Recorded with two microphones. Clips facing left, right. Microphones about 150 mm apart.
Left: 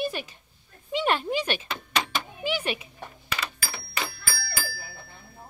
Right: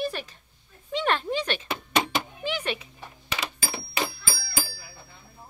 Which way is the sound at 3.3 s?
20° right (ahead or behind).